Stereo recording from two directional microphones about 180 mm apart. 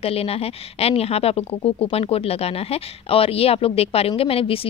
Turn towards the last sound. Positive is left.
turn(degrees=30)  # may be behind; listen again after turning